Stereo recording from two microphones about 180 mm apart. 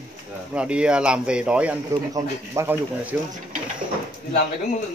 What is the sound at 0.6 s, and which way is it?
Speech, 5° right (ahead or behind).